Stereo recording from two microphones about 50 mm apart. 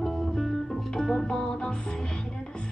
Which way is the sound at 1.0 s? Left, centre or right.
Centre.